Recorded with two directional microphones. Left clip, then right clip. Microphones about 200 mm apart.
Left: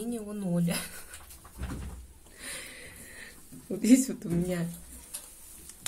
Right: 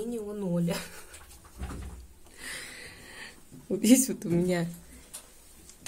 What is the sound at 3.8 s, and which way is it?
Speech, 25° right (ahead or behind).